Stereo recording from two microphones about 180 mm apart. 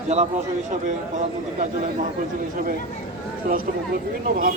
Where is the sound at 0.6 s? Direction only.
45° right (ahead or behind).